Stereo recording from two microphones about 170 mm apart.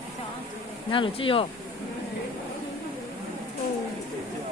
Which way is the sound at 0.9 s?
30° left (ahead or behind).